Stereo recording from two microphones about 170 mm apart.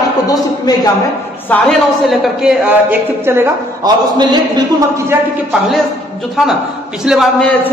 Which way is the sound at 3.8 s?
25° right (ahead or behind).